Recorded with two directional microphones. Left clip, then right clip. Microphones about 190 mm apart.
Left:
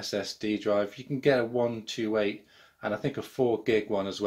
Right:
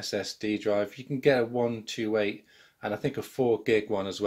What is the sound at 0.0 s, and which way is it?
Speech, 25° right (ahead or behind).